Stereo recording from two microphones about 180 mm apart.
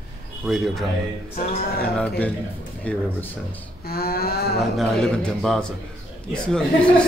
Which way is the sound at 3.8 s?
60° left (ahead or behind).